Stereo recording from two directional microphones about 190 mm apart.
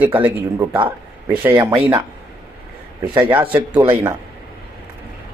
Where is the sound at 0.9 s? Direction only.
10° right (ahead or behind).